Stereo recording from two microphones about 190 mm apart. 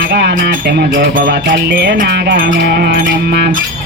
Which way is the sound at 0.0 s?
55° right (ahead or behind).